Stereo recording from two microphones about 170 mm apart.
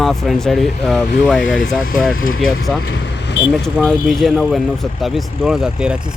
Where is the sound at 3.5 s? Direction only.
Centre (ahead or behind).